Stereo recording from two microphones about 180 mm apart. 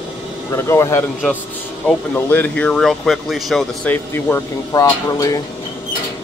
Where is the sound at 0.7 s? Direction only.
15° left (ahead or behind).